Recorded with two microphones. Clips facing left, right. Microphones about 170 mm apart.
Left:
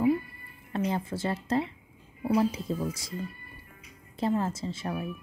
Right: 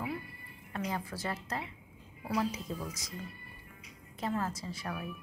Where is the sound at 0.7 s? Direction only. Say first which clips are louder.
Left 7 dB; 30° left (ahead or behind).